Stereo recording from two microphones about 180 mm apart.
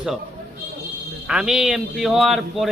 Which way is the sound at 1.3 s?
5° right (ahead or behind).